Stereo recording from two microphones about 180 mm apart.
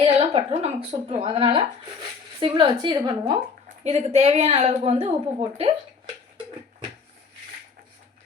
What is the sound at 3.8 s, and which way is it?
A woman's voice, 35° right (ahead or behind).